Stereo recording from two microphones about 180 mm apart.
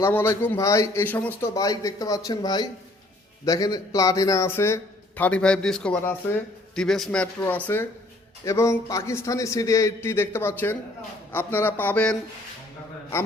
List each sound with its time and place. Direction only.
0.0 s a man's voice: 15° left (ahead or behind)